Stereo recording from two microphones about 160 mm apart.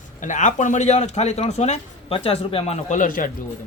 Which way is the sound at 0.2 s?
50° left (ahead or behind).